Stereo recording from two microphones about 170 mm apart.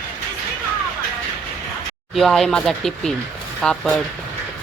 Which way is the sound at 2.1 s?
Centre (ahead or behind).